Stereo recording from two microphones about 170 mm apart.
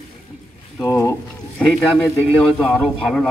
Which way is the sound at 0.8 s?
20° left (ahead or behind).